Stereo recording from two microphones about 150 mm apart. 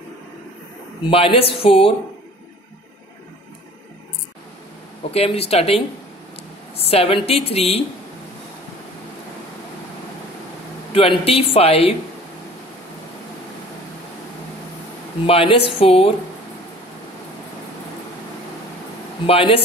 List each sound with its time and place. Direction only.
1.1 s a woman's voice: 40° left (ahead or behind)
5.1 s a woman's voice: 40° left (ahead or behind)
10.9 s a woman's voice: 40° left (ahead or behind)
15.2 s a woman's voice: 40° left (ahead or behind)
19.2 s a woman's voice: 40° left (ahead or behind)